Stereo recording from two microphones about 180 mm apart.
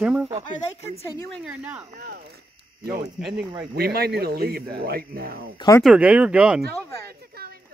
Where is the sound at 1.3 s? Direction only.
5° right (ahead or behind).